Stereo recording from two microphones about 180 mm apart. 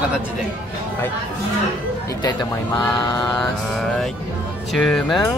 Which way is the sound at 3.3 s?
Centre (ahead or behind).